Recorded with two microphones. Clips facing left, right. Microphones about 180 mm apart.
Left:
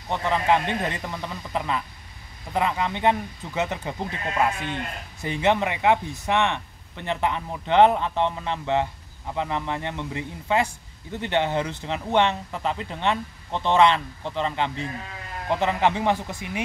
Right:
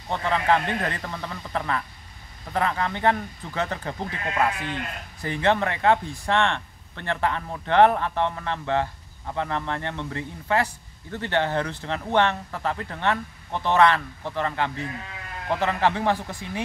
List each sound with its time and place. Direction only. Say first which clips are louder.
0.1 s a man's voice: left 1 dB; 15° left (ahead or behind)